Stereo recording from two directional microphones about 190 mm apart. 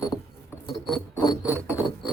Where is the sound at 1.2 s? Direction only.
20° left (ahead or behind).